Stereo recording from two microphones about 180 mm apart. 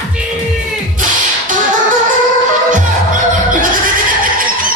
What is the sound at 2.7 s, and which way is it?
Music, 45° right (ahead or behind).